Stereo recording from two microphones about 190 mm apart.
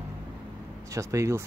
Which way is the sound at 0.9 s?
15° right (ahead or behind).